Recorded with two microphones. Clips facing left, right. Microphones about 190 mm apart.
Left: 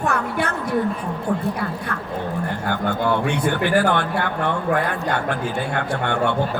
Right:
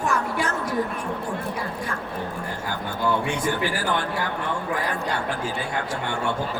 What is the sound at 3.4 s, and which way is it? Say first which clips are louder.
A man's voice: left 6 dB; 60° left (ahead or behind).